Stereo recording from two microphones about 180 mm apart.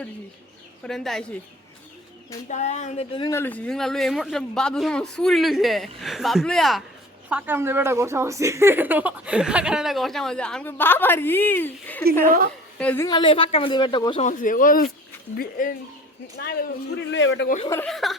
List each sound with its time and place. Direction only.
0.9 s speech: centre (ahead or behind)
2.5 s speech: 40° left (ahead or behind)
3.3 s speech: 10° left (ahead or behind)
7.3 s a woman's voice: 10° right (ahead or behind); by 13.1 s 10° left (ahead or behind)
13.1 s speech: 25° left (ahead or behind)
14.3 s speech: 45° left (ahead or behind)
17.1 s a man's voice: 90° left
17.8 s speech: centre (ahead or behind)